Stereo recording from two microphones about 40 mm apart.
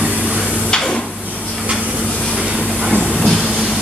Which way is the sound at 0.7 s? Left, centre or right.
Centre.